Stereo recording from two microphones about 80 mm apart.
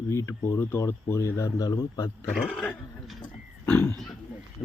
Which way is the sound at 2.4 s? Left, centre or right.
Centre.